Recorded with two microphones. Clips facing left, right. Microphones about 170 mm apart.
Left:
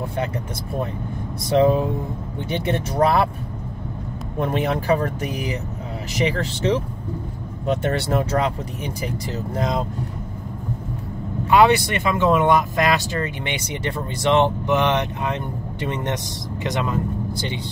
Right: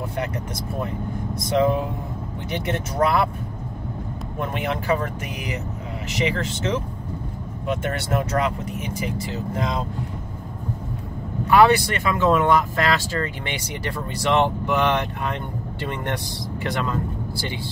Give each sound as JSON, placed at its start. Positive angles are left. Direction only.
{"t": 1.6, "sound": "speech", "side_deg": 30}
{"t": 4.4, "sound": "speech", "side_deg": 35}
{"t": 11.5, "sound": "speech", "side_deg": 20}